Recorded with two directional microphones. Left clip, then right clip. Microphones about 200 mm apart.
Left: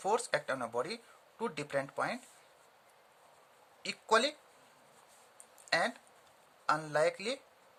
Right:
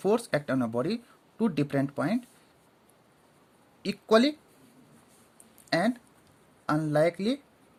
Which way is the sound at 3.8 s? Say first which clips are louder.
Right 6 dB; 25° right (ahead or behind).